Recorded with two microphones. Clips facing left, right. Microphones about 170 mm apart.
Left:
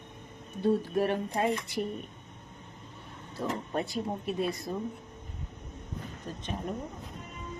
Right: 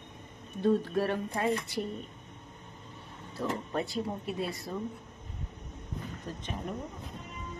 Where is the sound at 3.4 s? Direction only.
35° left (ahead or behind).